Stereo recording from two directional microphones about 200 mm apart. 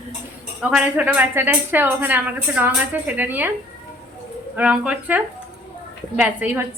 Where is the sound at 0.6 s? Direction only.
5° right (ahead or behind).